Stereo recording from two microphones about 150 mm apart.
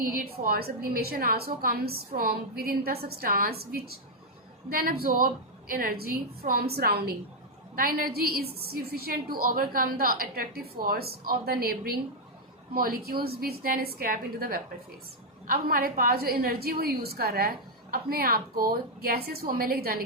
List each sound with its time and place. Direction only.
0.0 s a woman's voice: 75° right (ahead or behind); by 7.1 s 90° right
7.8 s a woman's voice: 75° right (ahead or behind)
12.7 s a woman's voice: 80° right